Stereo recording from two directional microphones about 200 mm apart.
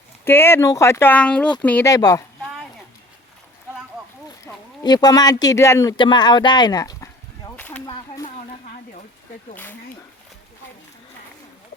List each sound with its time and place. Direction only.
0.3 s speech: 10° left (ahead or behind)
4.4 s speech: 20° left (ahead or behind)
7.5 s a sound: 10° left (ahead or behind)